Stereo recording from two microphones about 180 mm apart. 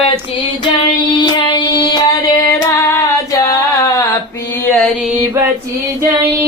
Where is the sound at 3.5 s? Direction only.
20° left (ahead or behind).